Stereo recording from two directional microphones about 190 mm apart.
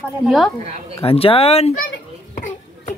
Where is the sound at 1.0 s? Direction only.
30° left (ahead or behind).